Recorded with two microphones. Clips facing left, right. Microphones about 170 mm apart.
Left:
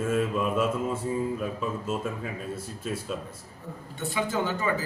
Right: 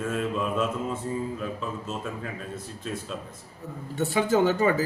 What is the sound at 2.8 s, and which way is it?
Mantra, 5° left (ahead or behind).